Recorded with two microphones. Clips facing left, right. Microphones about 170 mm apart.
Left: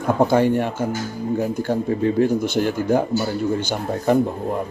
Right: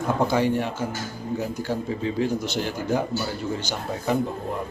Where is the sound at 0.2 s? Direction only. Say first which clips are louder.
Left 6 dB; 50° left (ahead or behind).